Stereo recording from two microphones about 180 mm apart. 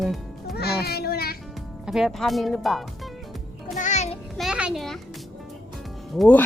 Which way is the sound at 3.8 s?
40° left (ahead or behind).